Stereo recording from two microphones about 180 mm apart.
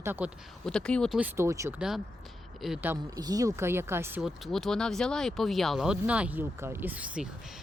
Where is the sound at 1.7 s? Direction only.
Centre (ahead or behind).